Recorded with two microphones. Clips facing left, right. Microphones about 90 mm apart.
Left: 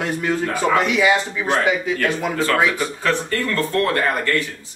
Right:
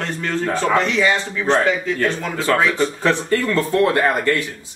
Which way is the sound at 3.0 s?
15° right (ahead or behind).